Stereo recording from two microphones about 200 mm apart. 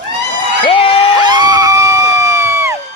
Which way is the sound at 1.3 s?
20° right (ahead or behind).